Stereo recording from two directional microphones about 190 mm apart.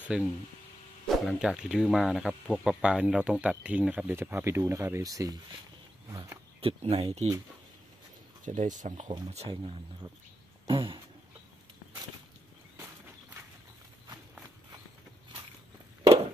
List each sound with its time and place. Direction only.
0.1 s speech: 5° right (ahead or behind)
6.6 s speech: 30° right (ahead or behind)
8.5 s speech: 40° right (ahead or behind)